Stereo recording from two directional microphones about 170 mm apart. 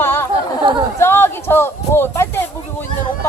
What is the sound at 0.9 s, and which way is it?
Speech, 15° left (ahead or behind).